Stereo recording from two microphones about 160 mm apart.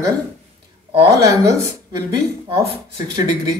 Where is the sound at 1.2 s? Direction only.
20° right (ahead or behind).